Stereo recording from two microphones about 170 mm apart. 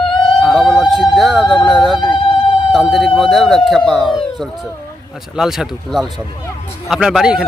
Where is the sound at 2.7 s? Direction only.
Centre (ahead or behind).